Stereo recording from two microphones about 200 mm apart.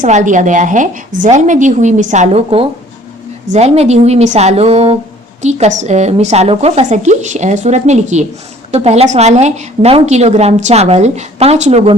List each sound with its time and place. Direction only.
0.0 s a woman's voice: 40° right (ahead or behind)